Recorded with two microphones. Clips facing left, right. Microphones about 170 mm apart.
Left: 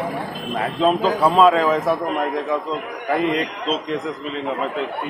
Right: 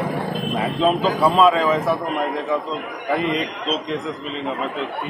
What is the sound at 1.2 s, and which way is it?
Speech, 10° left (ahead or behind).